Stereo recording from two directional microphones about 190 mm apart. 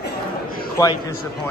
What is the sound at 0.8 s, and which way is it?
Speech, 20° left (ahead or behind).